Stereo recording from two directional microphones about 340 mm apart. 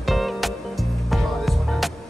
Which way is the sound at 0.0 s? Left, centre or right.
Centre.